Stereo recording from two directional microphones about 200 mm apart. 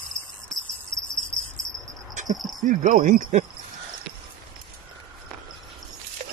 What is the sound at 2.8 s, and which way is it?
Speech, 40° right (ahead or behind).